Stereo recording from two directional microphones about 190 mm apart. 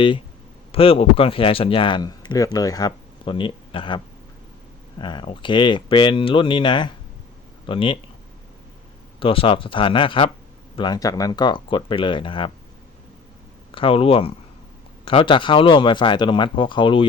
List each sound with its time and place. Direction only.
0.7 s speech: 30° left (ahead or behind)
9.2 s speech: 30° left (ahead or behind)
13.7 s speech: 30° left (ahead or behind)